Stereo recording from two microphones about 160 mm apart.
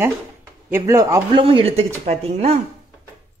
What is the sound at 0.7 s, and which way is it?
Speech, 15° right (ahead or behind).